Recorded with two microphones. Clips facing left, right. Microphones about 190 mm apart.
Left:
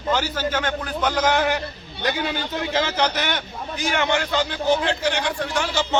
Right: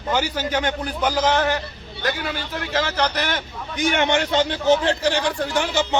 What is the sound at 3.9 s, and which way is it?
A man's voice, 25° right (ahead or behind).